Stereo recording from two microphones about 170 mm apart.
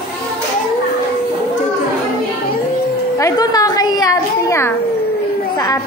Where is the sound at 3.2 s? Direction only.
20° left (ahead or behind).